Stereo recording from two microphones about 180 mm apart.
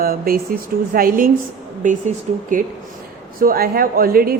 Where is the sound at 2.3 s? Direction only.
40° right (ahead or behind).